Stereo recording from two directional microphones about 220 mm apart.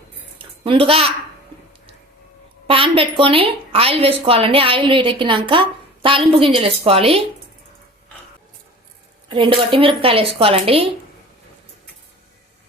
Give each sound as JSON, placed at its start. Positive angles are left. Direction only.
{"t": 0.3, "sound": "a sound", "side_deg": -25}
{"t": 2.6, "sound": "a woman's voice", "side_deg": -25}
{"t": 9.3, "sound": "a woman's voice", "side_deg": -25}